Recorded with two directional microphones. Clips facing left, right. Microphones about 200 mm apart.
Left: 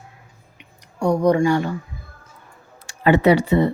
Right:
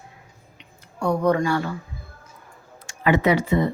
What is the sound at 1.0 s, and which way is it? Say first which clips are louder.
Speech: left 4 dB; 15° left (ahead or behind).